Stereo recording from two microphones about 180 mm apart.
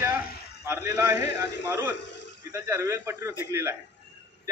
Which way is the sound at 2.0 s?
75° left (ahead or behind).